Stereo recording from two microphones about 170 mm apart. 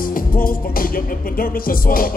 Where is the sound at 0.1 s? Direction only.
55° left (ahead or behind).